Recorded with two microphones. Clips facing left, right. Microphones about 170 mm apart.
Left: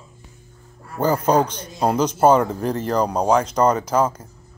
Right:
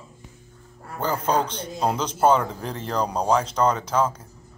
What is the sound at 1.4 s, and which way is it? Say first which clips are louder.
Speech: left 2 dB; 30° right (ahead or behind).